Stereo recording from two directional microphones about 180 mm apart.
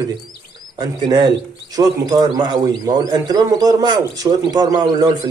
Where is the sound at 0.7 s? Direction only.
20° right (ahead or behind).